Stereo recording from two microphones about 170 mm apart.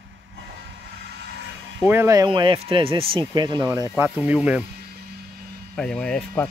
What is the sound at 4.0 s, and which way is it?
Speech, 10° right (ahead or behind).